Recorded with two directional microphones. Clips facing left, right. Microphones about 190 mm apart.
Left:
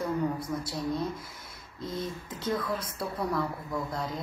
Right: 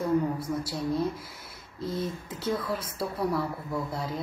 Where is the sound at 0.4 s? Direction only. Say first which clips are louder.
Right 2 dB; 10° right (ahead or behind).